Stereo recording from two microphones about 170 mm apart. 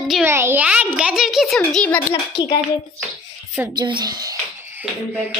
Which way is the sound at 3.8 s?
25° right (ahead or behind).